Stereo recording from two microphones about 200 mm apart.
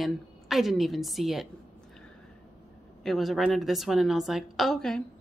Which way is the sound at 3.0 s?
Centre (ahead or behind).